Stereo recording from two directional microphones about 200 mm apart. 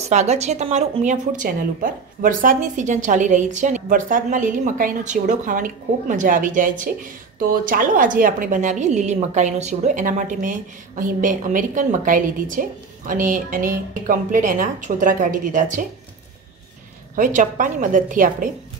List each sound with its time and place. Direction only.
0.0 s a woman's voice: 35° right (ahead or behind)
17.1 s a woman's voice: 40° right (ahead or behind)